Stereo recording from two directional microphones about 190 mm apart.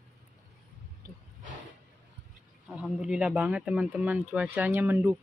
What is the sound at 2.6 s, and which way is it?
Speech, 5° right (ahead or behind).